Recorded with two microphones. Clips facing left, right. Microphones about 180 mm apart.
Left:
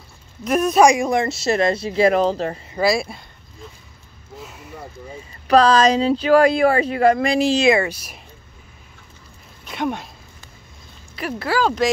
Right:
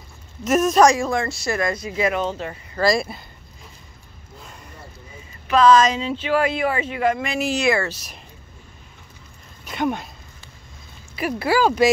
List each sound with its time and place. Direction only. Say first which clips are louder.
0.4 s speech: even; centre (ahead or behind)
0.8 s speech: left 2 dB; 15° left (ahead or behind); by 2.6 s 35° left (ahead or behind)
2.7 s speech: right 1 dB; 5° left (ahead or behind)
4.4 s a sound: left 5 dB; 5° left (ahead or behind)
5.5 s speech: left 1 dB; 35° left (ahead or behind); by 8.2 s 10° left (ahead or behind)
9.7 s speech: right 1 dB; centre (ahead or behind)
11.1 s speech: right 2 dB; 10° right (ahead or behind)